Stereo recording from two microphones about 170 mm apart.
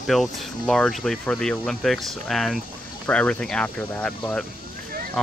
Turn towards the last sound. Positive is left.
turn(degrees=5)  # may be behind; listen again after turning